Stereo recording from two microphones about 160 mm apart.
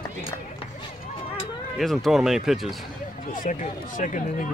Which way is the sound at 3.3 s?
55° left (ahead or behind).